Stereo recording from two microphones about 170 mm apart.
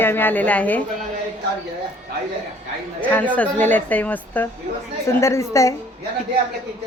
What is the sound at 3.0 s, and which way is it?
A woman's voice, 10° left (ahead or behind).